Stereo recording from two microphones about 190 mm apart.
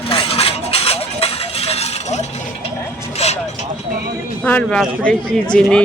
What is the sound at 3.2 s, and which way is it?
Vehicle, 35° left (ahead or behind).